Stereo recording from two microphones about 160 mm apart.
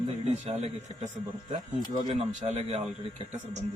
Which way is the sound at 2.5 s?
45° right (ahead or behind).